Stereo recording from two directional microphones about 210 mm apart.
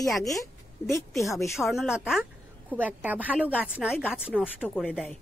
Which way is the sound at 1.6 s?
Centre (ahead or behind).